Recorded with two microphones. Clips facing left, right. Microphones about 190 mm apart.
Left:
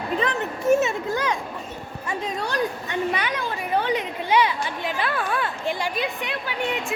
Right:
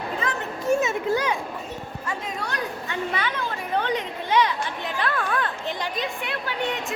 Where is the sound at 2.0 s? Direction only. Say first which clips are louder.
Left 4 dB; 20° left (ahead or behind).